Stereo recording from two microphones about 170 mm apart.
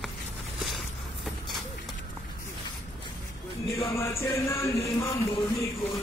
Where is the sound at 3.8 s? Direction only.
15° left (ahead or behind).